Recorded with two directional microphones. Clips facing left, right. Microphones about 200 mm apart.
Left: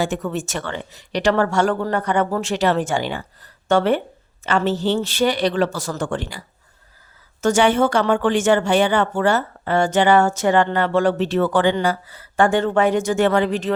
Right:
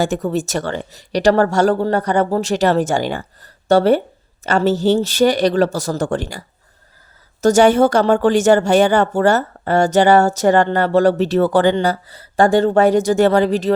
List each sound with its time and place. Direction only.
0.0 s speech: 40° right (ahead or behind)
7.4 s speech: 40° right (ahead or behind)